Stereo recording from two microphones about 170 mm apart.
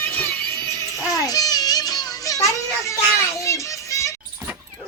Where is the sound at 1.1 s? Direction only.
20° left (ahead or behind).